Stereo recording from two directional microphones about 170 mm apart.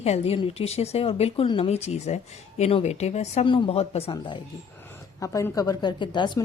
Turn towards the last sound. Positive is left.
turn(degrees=25)  # may be behind; listen again after turning